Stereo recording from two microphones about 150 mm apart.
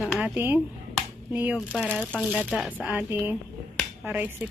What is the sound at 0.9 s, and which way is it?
Finger snapping, 10° right (ahead or behind).